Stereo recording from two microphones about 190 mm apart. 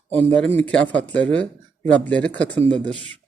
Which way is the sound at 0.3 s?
5° left (ahead or behind).